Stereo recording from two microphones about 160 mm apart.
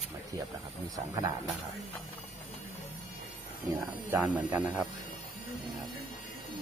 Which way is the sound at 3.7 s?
10° right (ahead or behind).